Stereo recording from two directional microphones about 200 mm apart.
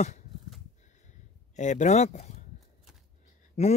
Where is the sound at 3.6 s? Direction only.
35° left (ahead or behind).